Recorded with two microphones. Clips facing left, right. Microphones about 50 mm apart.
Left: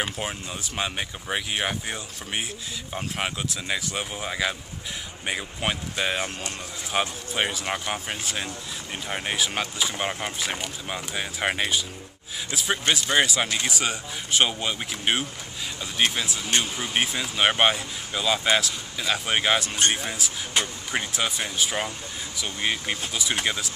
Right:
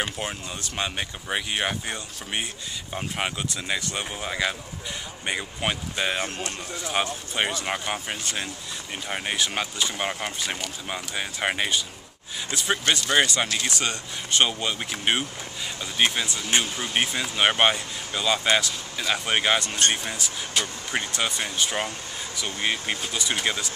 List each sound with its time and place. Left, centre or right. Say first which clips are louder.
0.0 s speech: even; centre
20.5 s speech: left 2 dB; left
20.9 s speech: even; centre